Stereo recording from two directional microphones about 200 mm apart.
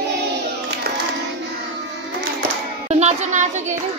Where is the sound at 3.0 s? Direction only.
35° right (ahead or behind).